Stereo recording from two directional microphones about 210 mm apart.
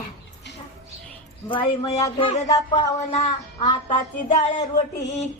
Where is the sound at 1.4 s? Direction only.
25° left (ahead or behind).